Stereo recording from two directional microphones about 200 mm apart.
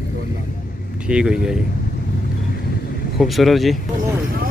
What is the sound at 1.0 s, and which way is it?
Speech, 5° right (ahead or behind).